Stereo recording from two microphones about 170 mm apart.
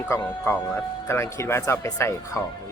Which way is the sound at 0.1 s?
15° left (ahead or behind).